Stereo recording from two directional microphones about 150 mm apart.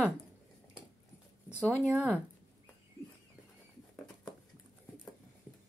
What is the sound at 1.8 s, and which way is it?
Speech, 10° right (ahead or behind).